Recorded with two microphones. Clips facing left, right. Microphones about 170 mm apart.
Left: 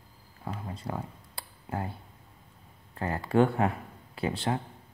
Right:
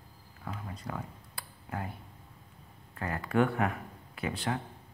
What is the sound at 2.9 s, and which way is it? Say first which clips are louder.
Speech: left 4 dB; 30° left (ahead or behind).